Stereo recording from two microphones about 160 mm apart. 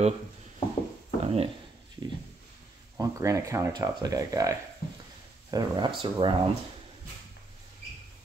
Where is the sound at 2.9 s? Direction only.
20° right (ahead or behind).